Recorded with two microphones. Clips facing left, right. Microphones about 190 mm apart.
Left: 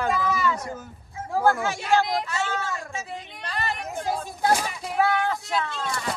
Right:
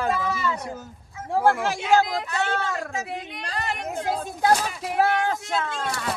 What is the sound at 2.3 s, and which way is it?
Speech, 60° right (ahead or behind).